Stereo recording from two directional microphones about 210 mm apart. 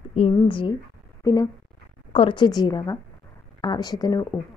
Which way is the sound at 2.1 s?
25° left (ahead or behind).